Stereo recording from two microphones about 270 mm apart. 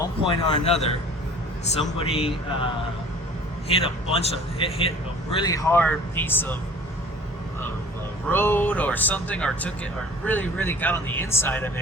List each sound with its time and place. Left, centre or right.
0.0 s speech: centre
2.0 s speech: left
3.8 s speech: centre
8.3 s speech: centre